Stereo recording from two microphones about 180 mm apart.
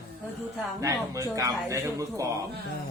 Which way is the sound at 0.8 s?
15° right (ahead or behind).